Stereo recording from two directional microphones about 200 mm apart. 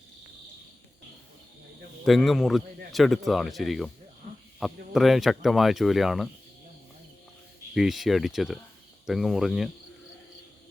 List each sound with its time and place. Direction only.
2.0 s a man's voice: centre (ahead or behind)
4.2 s a sound: 40° right (ahead or behind)
4.6 s a man's voice: centre (ahead or behind)
7.7 s a man's voice: centre (ahead or behind)